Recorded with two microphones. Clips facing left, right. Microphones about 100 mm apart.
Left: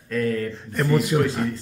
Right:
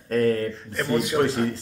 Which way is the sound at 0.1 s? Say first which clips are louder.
Right 3 dB; 35° right (ahead or behind).